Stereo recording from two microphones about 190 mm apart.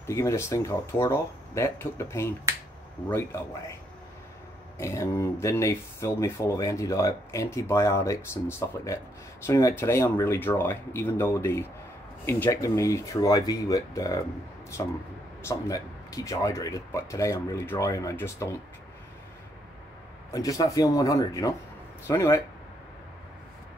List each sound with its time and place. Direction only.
0.1 s speech: 15° left (ahead or behind)
4.7 s speech: 15° left (ahead or behind)
20.2 s speech: 15° left (ahead or behind)